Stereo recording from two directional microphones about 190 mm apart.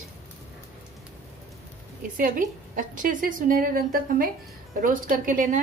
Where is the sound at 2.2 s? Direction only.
45° right (ahead or behind).